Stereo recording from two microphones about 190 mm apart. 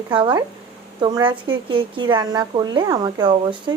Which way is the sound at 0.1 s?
25° right (ahead or behind).